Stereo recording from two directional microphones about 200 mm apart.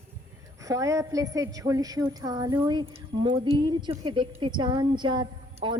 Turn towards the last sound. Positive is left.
turn(degrees=-20)  # may be behind; listen again after turning